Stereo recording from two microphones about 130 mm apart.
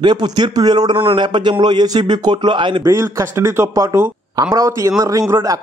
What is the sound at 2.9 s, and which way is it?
A man's voice, 20° right (ahead or behind).